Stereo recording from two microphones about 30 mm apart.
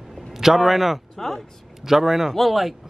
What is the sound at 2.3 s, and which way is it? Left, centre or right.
Speech, centre.